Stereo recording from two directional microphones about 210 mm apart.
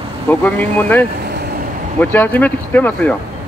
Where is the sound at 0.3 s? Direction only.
5° left (ahead or behind).